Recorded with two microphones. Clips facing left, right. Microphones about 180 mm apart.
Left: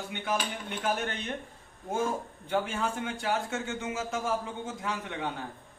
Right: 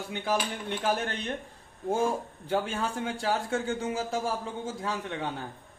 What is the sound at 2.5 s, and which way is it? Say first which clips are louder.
A man's voice: right 1 dB; 35° right (ahead or behind).